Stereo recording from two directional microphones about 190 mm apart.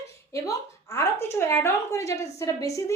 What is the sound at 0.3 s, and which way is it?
A woman's voice, 15° left (ahead or behind).